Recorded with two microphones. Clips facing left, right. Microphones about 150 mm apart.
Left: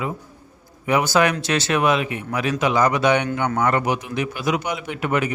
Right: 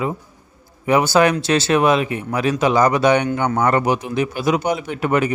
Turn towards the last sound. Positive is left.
turn(degrees=-35)  # may be behind; listen again after turning